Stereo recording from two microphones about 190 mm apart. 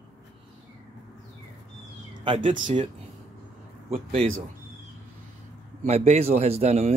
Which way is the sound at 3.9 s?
30° right (ahead or behind).